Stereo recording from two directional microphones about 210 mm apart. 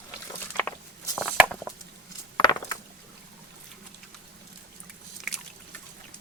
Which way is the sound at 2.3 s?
20° left (ahead or behind).